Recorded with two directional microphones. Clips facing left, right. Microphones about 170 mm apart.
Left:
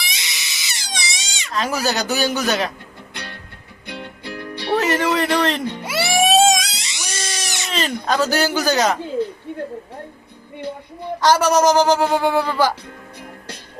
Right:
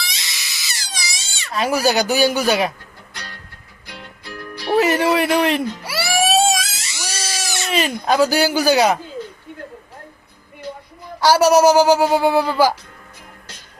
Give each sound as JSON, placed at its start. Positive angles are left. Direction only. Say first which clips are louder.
{"t": 0.0, "sound": "baby cry", "louder": "left 1 dB", "side_deg": 20}
{"t": 1.5, "sound": "speech", "louder": "right 4 dB", "side_deg": -10}
{"t": 3.2, "sound": "music", "louder": "left 2 dB", "side_deg": 25}
{"t": 4.8, "sound": "a man's voice", "louder": "right 4 dB", "side_deg": -10}
{"t": 5.7, "sound": "music", "louder": "left 1 dB", "side_deg": 20}
{"t": 6.7, "sound": "cat", "louder": "right 1 dB", "side_deg": 20}
{"t": 7.7, "sound": "speech", "louder": "right 3 dB", "side_deg": -10}
{"t": 11.2, "sound": "speech", "louder": "right 3 dB", "side_deg": -10}